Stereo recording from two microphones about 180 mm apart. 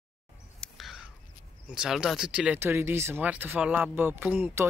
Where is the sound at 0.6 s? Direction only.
Centre (ahead or behind).